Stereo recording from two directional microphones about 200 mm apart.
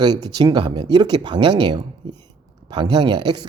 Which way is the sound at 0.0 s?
20° right (ahead or behind).